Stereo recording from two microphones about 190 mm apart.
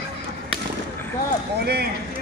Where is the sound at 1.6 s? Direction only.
60° right (ahead or behind).